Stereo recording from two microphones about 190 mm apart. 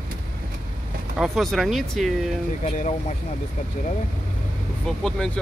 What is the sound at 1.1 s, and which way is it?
Speech, centre (ahead or behind).